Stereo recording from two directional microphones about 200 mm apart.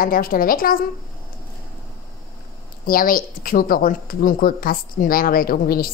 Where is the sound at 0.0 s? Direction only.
45° left (ahead or behind).